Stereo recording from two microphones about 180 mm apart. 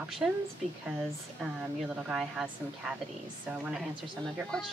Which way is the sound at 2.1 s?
5° right (ahead or behind).